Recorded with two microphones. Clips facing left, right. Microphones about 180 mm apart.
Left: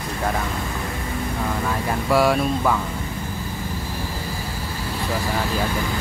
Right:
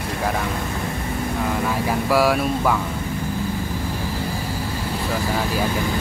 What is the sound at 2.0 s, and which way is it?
Speech, centre (ahead or behind).